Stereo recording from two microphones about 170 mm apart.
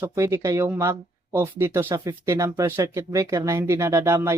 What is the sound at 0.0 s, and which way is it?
Speech, 15° right (ahead or behind).